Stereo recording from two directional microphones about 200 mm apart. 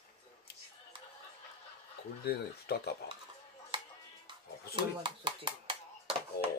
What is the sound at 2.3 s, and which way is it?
Speech, 55° left (ahead or behind).